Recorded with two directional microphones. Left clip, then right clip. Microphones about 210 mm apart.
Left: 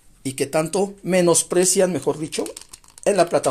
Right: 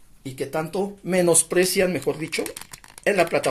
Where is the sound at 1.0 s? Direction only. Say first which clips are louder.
Left 1 dB; 25° left (ahead or behind).